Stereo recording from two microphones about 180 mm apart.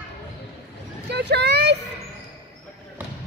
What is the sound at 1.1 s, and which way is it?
Vehicle, 70° right (ahead or behind).